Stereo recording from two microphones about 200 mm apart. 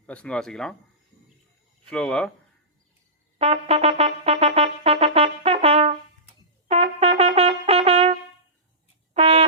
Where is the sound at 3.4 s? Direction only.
30° right (ahead or behind).